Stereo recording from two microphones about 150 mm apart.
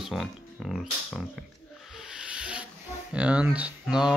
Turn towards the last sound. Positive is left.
turn(degrees=-5)  # may be behind; listen again after turning